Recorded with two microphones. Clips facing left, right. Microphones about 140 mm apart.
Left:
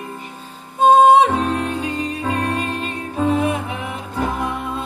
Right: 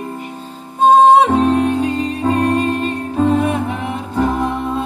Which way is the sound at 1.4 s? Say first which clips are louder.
Right 7 dB; 45° right (ahead or behind).